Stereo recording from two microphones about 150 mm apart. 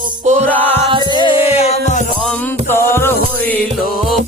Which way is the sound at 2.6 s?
15° left (ahead or behind).